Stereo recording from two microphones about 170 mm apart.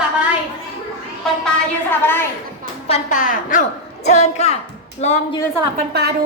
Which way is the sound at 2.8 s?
40° left (ahead or behind).